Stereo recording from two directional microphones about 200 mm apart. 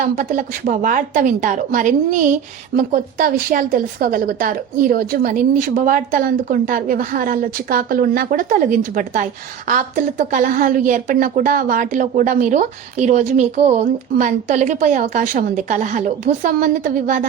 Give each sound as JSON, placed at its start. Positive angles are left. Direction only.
{"t": 0.0, "sound": "speech", "side_deg": -40}